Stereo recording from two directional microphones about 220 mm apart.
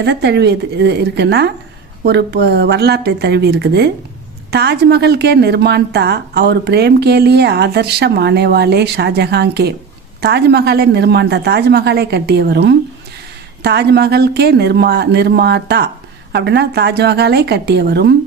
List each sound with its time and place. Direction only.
0.0 s a woman's voice: 50° right (ahead or behind)